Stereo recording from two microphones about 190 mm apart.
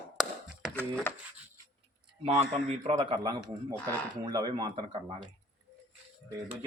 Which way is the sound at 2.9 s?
20° right (ahead or behind).